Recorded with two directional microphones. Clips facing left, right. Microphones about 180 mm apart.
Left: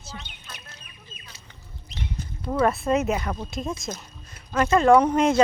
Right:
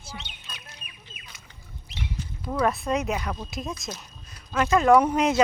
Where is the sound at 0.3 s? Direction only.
15° right (ahead or behind).